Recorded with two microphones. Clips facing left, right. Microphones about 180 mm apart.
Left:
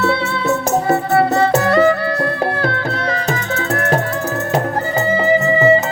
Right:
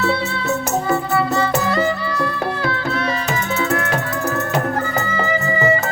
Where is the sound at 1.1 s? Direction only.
60° left (ahead or behind).